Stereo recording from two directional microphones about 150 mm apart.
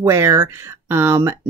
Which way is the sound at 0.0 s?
20° right (ahead or behind).